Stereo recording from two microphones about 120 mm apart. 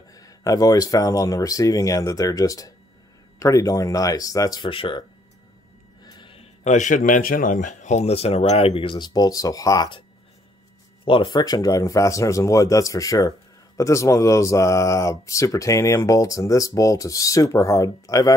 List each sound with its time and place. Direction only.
0.1 s speech: 30° left (ahead or behind)
4.6 s speech: 45° left (ahead or behind)
6.0 s a sound: 40° left (ahead or behind)
6.6 s speech: 85° left; by 9.8 s 30° left (ahead or behind)
11.1 s speech: 40° left (ahead or behind)